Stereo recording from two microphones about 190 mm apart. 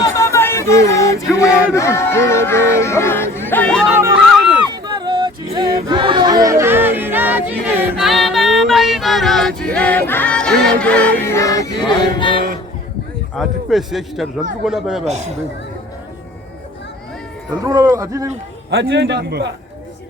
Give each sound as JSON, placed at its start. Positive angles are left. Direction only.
{"t": 0.0, "sound": "a sound", "side_deg": 15}
{"t": 1.4, "sound": "speech", "side_deg": 15}
{"t": 3.8, "sound": "a sound", "side_deg": -10}
{"t": 4.7, "sound": "a sound", "side_deg": -25}
{"t": 9.7, "sound": "music", "side_deg": 10}
{"t": 13.3, "sound": "a man's voice", "side_deg": 0}
{"t": 15.0, "sound": "speech", "side_deg": -35}
{"t": 17.6, "sound": "speech", "side_deg": -15}
{"t": 18.7, "sound": "a man's voice", "side_deg": -80}